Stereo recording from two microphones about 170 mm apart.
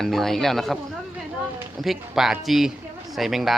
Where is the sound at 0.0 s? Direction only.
Centre (ahead or behind).